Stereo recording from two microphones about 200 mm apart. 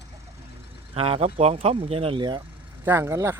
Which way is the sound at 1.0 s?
30° right (ahead or behind).